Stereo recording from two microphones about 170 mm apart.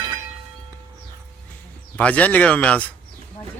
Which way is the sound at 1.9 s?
10° left (ahead or behind).